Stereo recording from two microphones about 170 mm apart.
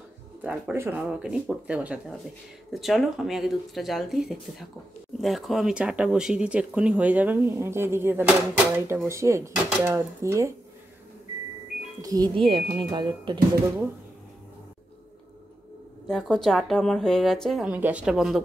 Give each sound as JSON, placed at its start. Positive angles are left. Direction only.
{"t": 0.4, "sound": "speech", "side_deg": -10}
{"t": 12.0, "sound": "speech", "side_deg": -20}
{"t": 16.1, "sound": "speech", "side_deg": 5}